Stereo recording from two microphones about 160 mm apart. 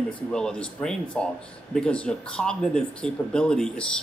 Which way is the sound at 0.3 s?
5° left (ahead or behind).